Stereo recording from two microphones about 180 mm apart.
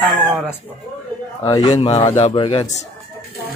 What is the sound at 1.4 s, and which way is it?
A man's voice, 20° left (ahead or behind).